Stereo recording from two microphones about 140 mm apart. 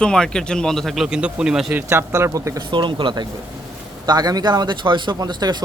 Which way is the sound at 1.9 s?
20° right (ahead or behind).